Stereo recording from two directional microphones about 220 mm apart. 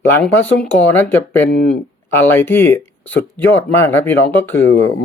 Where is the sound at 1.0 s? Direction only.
45° left (ahead or behind).